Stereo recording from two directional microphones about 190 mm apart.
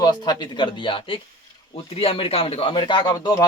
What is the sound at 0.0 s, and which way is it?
Speech, 20° left (ahead or behind).